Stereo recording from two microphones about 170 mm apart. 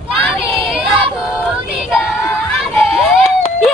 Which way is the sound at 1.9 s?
5° right (ahead or behind).